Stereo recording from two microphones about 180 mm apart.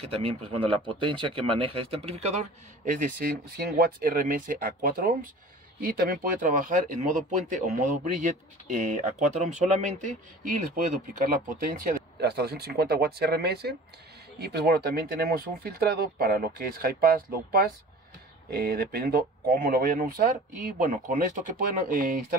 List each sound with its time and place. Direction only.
0.1 s speech: 30° right (ahead or behind)
11.4 s speech: 55° right (ahead or behind)